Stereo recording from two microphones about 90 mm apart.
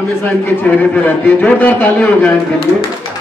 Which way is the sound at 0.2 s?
20° left (ahead or behind).